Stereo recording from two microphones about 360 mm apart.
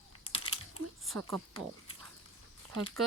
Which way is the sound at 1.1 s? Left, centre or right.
Right.